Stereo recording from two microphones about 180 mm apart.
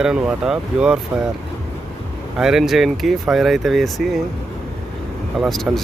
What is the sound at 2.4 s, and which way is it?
Speech, 5° right (ahead or behind).